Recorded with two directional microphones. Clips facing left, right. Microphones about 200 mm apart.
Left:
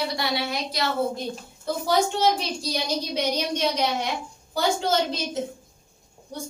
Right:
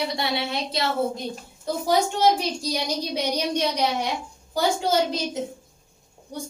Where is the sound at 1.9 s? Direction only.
10° right (ahead or behind).